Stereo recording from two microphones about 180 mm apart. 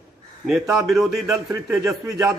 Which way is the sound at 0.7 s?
Centre (ahead or behind).